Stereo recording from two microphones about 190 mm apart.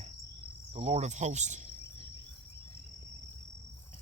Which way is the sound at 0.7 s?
30° right (ahead or behind).